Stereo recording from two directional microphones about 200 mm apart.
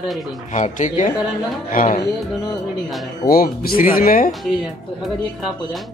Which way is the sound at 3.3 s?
45° left (ahead or behind).